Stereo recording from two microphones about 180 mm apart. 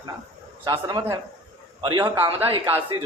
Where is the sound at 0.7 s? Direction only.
20° right (ahead or behind).